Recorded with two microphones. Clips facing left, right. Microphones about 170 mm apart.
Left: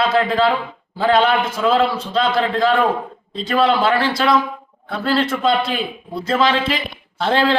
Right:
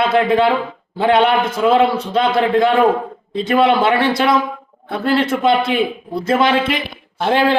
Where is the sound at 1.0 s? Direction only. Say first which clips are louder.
Right 2 dB; 20° right (ahead or behind).